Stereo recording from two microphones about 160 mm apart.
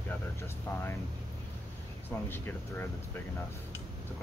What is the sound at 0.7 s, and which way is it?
Speech, 15° left (ahead or behind).